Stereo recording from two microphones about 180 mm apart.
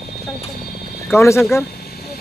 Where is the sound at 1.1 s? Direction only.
15° left (ahead or behind).